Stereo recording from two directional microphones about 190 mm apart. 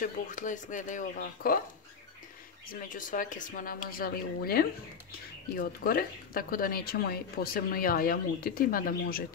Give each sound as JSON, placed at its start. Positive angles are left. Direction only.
{"t": 0.0, "sound": "speech", "side_deg": 40}
{"t": 2.7, "sound": "speech", "side_deg": 45}